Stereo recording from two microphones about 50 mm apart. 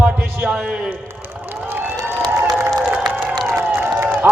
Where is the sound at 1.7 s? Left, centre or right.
Right.